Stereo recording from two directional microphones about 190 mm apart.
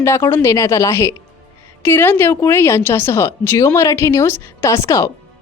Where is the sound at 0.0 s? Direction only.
15° left (ahead or behind).